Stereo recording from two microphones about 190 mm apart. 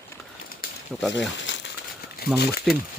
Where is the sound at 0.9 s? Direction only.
5° right (ahead or behind).